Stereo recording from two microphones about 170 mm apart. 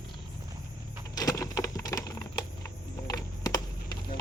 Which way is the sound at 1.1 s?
20° left (ahead or behind).